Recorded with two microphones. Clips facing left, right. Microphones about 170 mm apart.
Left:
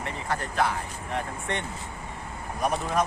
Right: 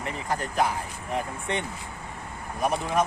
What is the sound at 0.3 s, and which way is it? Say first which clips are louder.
Speech: right 1 dB; 15° right (ahead or behind).